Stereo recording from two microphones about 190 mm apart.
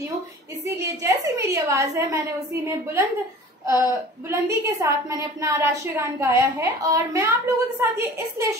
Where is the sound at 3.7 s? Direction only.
15° right (ahead or behind).